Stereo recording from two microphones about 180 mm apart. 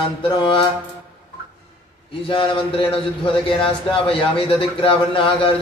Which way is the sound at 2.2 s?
30° left (ahead or behind).